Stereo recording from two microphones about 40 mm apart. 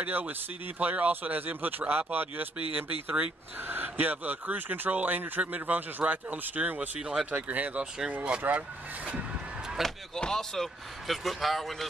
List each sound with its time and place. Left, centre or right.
0.0 s speech: right
7.0 s speech: centre
7.2 s speech: right
9.8 s speech: centre
11.1 s speech: centre